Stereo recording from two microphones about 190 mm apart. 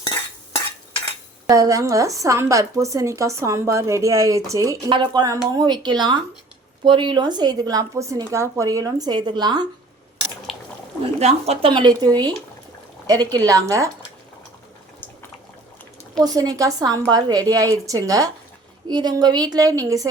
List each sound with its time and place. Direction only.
1.5 s a woman's voice: 15° right (ahead or behind)
11.2 s a woman's voice: 35° right (ahead or behind); by 13.9 s 15° right (ahead or behind)
16.2 s a woman's voice: 20° right (ahead or behind)